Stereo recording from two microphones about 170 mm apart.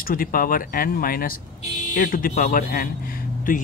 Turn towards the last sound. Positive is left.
turn(degrees=55)  # may be behind; listen again after turning